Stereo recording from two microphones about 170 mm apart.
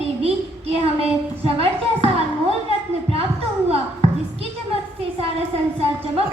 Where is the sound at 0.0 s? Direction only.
35° right (ahead or behind).